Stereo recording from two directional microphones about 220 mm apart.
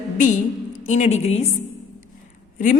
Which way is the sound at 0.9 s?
30° left (ahead or behind).